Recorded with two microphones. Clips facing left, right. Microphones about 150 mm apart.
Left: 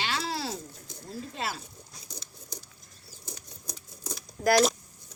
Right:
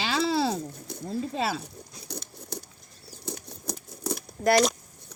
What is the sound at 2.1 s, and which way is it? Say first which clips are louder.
Patter: right 9 dB; 60° right (ahead or behind).